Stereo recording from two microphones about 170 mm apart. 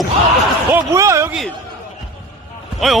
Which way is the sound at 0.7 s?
15° right (ahead or behind).